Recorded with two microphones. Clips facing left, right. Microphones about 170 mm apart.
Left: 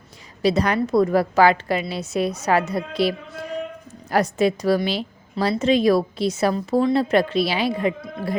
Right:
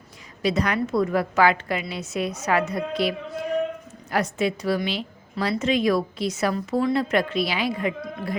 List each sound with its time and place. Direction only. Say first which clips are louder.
0.4 s a woman's voice: left 4 dB; 30° left (ahead or behind)